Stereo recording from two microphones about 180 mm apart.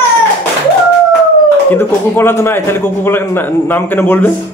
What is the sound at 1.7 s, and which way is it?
A man's voice, 10° left (ahead or behind).